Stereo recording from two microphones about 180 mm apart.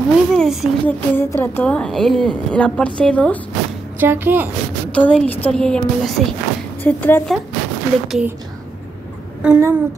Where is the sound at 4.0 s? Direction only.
10° right (ahead or behind).